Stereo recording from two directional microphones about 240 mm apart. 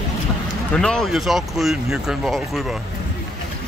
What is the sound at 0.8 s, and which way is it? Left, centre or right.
Speech, centre.